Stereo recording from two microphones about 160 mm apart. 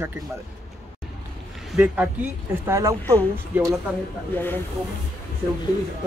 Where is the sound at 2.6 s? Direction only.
20° right (ahead or behind).